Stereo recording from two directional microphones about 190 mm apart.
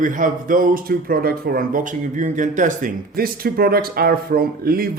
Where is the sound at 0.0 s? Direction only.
45° right (ahead or behind).